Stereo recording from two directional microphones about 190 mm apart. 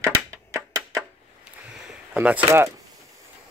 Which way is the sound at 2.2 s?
10° right (ahead or behind).